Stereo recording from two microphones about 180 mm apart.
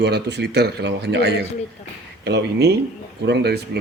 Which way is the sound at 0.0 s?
65° right (ahead or behind).